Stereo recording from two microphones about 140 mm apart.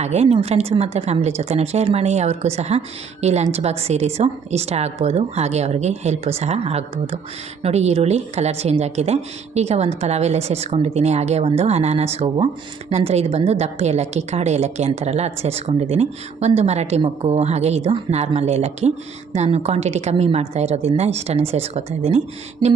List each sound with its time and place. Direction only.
0.0 s a woman's voice: 50° right (ahead or behind)